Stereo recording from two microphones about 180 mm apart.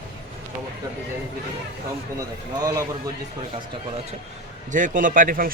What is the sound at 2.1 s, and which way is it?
Speech, 20° right (ahead or behind).